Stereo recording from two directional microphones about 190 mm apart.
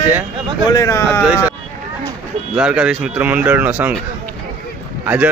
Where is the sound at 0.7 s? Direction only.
15° left (ahead or behind).